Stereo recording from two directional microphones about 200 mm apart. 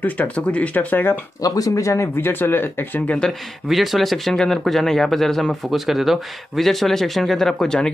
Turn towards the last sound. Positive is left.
turn(degrees=5)  # may be behind; listen again after turning